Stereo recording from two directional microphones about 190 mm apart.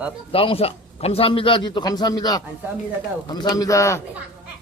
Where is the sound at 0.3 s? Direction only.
30° left (ahead or behind).